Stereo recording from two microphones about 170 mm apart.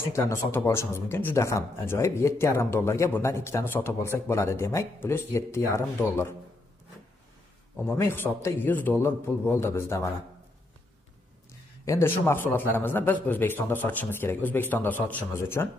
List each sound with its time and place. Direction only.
0.0 s speech: 15° left (ahead or behind)
7.7 s speech: 15° left (ahead or behind)
11.8 s speech: 15° left (ahead or behind)